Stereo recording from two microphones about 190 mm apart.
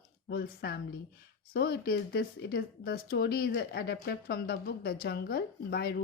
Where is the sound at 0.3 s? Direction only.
55° left (ahead or behind).